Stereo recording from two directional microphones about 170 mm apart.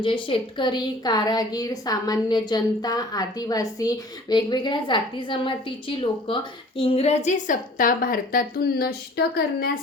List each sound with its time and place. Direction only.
0.0 s a woman's voice: 30° left (ahead or behind); by 9.7 s 65° left (ahead or behind)